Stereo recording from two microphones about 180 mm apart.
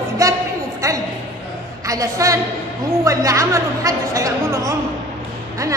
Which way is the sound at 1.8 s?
20° right (ahead or behind).